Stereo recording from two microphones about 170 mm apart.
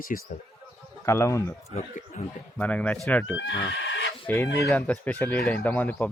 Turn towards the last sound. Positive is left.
turn(degrees=10)  # may be behind; listen again after turning